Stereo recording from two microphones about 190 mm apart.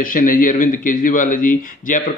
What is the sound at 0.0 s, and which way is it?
A man's voice, 45° left (ahead or behind).